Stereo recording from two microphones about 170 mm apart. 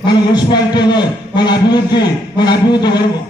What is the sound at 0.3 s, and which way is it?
A man's voice, 25° left (ahead or behind).